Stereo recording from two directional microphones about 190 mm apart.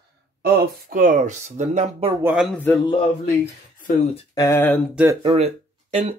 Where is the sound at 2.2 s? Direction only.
10° right (ahead or behind).